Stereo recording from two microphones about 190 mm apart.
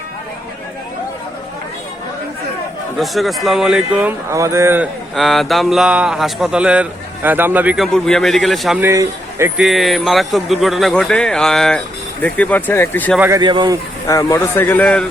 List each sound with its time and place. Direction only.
3.0 s speech: centre (ahead or behind)
5.1 s speech: centre (ahead or behind)
8.8 s a man's voice: 15° right (ahead or behind)
9.6 s speech: centre (ahead or behind)
13.1 s speech: 10° right (ahead or behind)
13.4 s a man's voice: 25° right (ahead or behind)
14.1 s speech: 15° left (ahead or behind)